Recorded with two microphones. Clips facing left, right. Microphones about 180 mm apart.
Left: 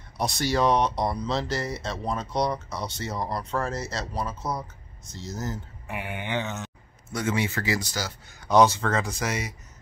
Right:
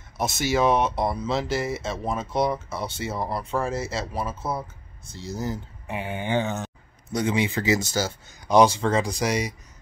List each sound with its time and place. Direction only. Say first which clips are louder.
0.2 s speech: right 2 dB; 5° right (ahead or behind)
5.9 s mantra: right 5 dB; 30° right (ahead or behind)
7.1 s speech: right 3 dB; 20° right (ahead or behind)
8.5 s speech: right 2 dB; 15° right (ahead or behind)